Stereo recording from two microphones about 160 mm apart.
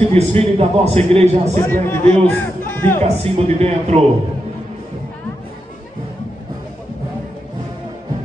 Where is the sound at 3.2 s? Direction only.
40° right (ahead or behind).